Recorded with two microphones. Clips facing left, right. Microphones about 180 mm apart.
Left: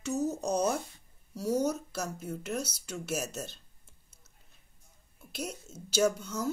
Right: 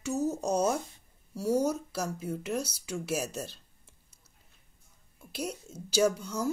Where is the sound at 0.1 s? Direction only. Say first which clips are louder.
Right 1 dB; 30° right (ahead or behind).